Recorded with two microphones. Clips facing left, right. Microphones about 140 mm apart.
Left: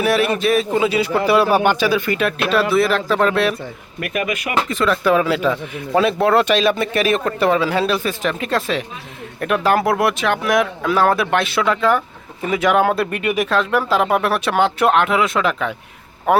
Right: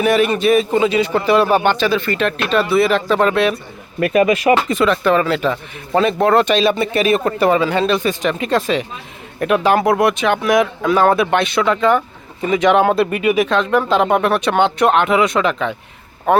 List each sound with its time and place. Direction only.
0.0 s speech: 5° left (ahead or behind)
4.0 s speech: 30° right (ahead or behind)
4.9 s speech: 5° left (ahead or behind)